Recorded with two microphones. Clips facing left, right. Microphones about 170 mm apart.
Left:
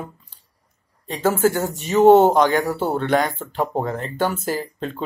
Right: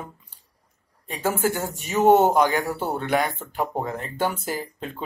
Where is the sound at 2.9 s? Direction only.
10° right (ahead or behind).